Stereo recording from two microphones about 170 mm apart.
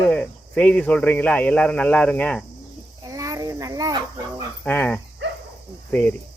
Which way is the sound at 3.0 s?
20° right (ahead or behind).